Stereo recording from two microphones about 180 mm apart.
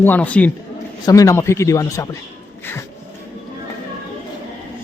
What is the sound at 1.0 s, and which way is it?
A man's voice, 20° left (ahead or behind).